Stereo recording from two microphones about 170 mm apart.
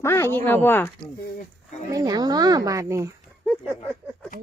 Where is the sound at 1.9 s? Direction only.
25° right (ahead or behind).